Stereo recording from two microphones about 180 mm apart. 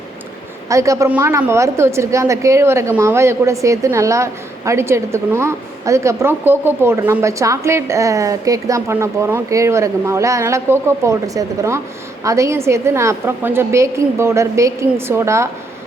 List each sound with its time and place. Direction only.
0.7 s a woman's voice: 15° right (ahead or behind)